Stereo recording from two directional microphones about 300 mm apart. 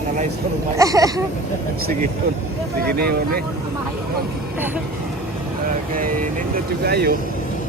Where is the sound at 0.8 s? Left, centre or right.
Centre.